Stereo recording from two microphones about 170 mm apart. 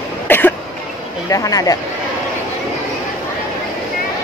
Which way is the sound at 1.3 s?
20° left (ahead or behind).